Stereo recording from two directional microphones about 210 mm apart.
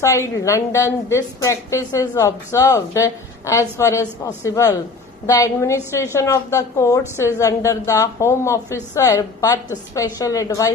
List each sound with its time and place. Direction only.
0.3 s a woman's voice: 15° left (ahead or behind)